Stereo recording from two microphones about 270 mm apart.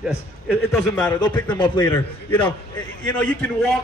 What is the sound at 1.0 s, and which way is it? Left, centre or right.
A man's voice, centre.